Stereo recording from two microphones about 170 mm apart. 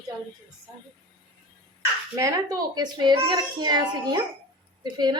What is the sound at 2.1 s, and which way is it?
A child's voice, 20° right (ahead or behind).